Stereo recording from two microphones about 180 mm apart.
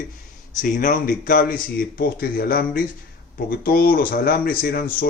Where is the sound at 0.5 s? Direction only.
45° left (ahead or behind).